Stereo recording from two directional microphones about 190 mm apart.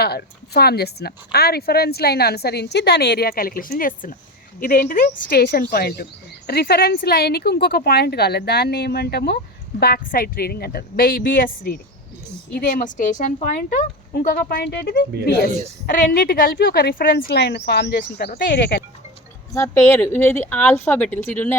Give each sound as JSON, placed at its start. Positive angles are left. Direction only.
{"t": 0.0, "sound": "a woman's voice", "side_deg": 55}
{"t": 15.9, "sound": "a woman's voice", "side_deg": 45}
{"t": 18.3, "sound": "a woman's voice", "side_deg": 50}
{"t": 19.5, "sound": "speech", "side_deg": 15}